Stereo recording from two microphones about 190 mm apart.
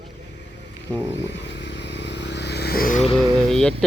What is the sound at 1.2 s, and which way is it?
Vehicle, 70° left (ahead or behind).